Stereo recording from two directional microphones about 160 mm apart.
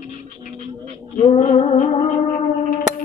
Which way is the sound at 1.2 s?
40° left (ahead or behind).